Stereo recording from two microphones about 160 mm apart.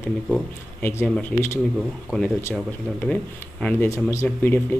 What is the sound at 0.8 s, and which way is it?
A man's voice, 10° left (ahead or behind).